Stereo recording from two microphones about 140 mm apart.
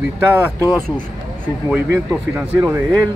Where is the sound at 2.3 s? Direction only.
15° right (ahead or behind).